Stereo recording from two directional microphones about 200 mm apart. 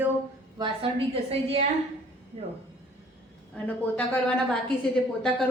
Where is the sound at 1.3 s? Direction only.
30° right (ahead or behind).